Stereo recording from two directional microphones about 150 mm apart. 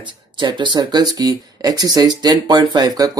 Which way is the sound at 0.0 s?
30° right (ahead or behind).